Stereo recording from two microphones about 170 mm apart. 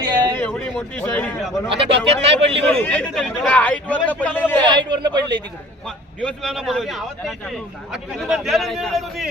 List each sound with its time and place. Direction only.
0.0 s a sound: 25° right (ahead or behind)
0.3 s a sound: 10° left (ahead or behind)
1.7 s speech: 35° right (ahead or behind)
2.8 s a man's voice: 5° left (ahead or behind)
4.6 s speech: 25° right (ahead or behind)
6.1 s speech: 5° left (ahead or behind)